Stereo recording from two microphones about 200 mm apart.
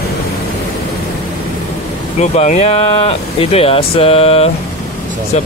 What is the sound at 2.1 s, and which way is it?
Speech, 35° left (ahead or behind).